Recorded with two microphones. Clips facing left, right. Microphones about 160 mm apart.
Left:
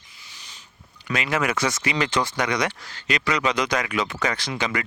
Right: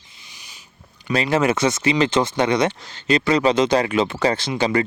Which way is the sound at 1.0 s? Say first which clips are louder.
Right 6 dB; 30° right (ahead or behind).